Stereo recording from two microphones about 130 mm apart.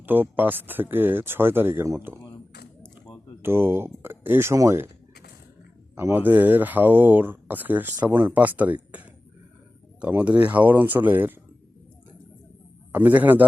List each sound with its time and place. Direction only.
0.0 s speech: 15° right (ahead or behind)
3.4 s speech: 15° right (ahead or behind)
6.0 s speech: 15° right (ahead or behind)
12.9 s speech: 15° right (ahead or behind)